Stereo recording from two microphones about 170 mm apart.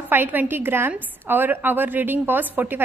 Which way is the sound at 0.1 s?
10° right (ahead or behind).